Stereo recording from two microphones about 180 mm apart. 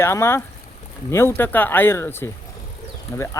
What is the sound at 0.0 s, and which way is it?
Speech, 15° left (ahead or behind).